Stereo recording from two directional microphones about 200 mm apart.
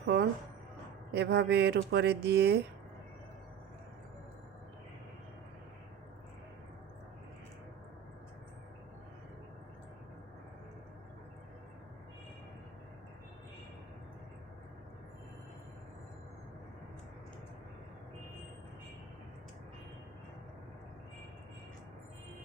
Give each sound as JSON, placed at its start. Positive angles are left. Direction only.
{"t": 0.0, "sound": "music", "side_deg": -60}
{"t": 1.1, "sound": "speech", "side_deg": -55}